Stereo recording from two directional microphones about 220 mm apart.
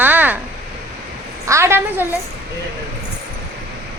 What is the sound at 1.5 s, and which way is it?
Speech, 10° right (ahead or behind).